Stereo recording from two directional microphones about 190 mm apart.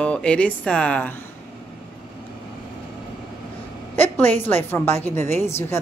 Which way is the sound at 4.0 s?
10° left (ahead or behind).